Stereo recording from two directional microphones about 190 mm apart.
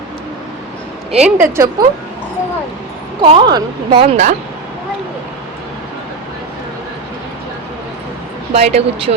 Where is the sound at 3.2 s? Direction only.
25° right (ahead or behind).